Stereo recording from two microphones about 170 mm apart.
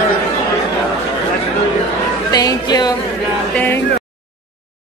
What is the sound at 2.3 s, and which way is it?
Music, 25° left (ahead or behind).